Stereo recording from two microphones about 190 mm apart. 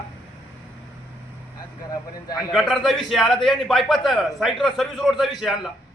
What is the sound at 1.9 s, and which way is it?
Speech, 20° left (ahead or behind).